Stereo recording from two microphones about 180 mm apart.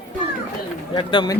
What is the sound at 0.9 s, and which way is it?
Speech, 25° left (ahead or behind).